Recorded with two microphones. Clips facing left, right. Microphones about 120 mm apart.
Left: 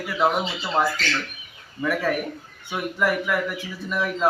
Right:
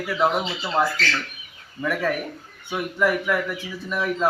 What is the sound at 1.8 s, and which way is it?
Speech, 5° left (ahead or behind).